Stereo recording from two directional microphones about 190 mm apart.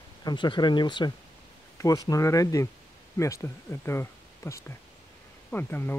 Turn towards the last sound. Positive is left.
turn(degrees=10)  # may be behind; listen again after turning